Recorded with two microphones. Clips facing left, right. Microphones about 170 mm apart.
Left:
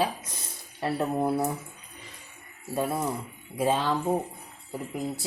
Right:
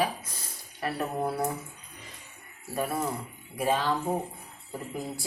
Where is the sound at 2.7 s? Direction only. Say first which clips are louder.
Left 2 dB; 20° left (ahead or behind).